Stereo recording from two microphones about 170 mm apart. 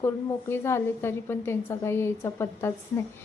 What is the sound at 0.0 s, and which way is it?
A woman's voice, 15° left (ahead or behind).